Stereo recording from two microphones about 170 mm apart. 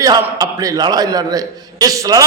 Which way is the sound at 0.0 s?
20° right (ahead or behind).